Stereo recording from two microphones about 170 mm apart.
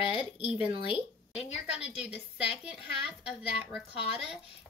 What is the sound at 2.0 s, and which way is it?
A woman's voice, 5° right (ahead or behind).